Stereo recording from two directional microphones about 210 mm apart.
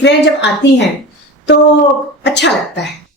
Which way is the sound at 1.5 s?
55° left (ahead or behind).